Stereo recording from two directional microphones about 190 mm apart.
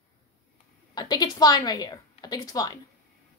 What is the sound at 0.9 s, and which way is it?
A woman's voice, 20° left (ahead or behind).